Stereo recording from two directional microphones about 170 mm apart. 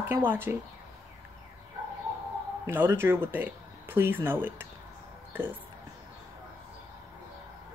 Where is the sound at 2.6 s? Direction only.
15° right (ahead or behind).